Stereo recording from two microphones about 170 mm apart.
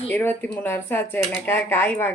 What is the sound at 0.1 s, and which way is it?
Speech, 10° left (ahead or behind).